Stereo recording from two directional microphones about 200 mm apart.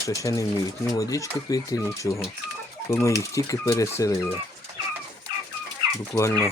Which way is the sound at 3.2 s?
15° left (ahead or behind).